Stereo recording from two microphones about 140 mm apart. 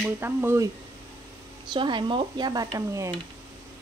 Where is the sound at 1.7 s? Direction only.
35° right (ahead or behind).